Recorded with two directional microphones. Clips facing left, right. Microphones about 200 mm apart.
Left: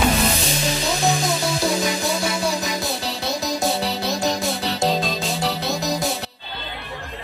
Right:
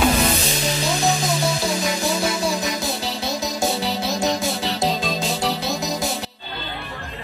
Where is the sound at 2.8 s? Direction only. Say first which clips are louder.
Even; centre (ahead or behind).